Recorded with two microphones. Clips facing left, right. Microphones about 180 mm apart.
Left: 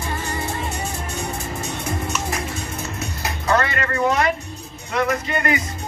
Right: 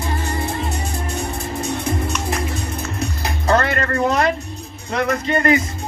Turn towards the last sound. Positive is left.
turn(degrees=-35)  # may be behind; listen again after turning